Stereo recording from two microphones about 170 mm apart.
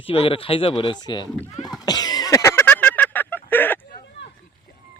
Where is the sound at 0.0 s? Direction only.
35° left (ahead or behind).